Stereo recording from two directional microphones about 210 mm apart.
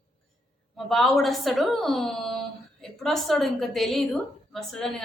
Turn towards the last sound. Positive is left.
turn(degrees=0)  # may be behind; listen again after turning